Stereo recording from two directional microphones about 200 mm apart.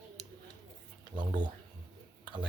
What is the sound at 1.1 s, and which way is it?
Speech, 25° right (ahead or behind).